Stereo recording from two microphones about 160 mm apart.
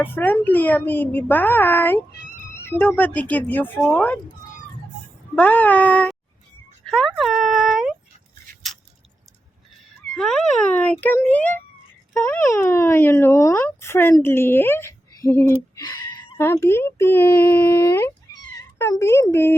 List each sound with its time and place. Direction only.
0.0 s speech: 15° left (ahead or behind)
5.3 s speech: 10° left (ahead or behind)
6.8 s a sound: centre (ahead or behind)
10.2 s a sound: 5° left (ahead or behind)
11.0 s speech: 10° left (ahead or behind)
15.8 s speech: 25° left (ahead or behind)
16.4 s speech: 15° left (ahead or behind)